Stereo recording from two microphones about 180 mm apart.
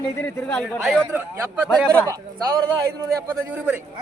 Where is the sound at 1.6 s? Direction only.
5° left (ahead or behind).